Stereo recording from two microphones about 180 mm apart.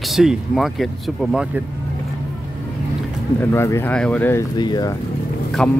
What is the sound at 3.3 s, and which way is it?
Speech, 15° left (ahead or behind).